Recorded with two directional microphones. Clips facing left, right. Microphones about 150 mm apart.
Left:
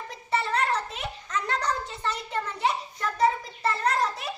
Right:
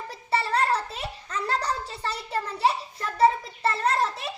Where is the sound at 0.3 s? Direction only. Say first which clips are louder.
Right 2 dB; 35° right (ahead or behind).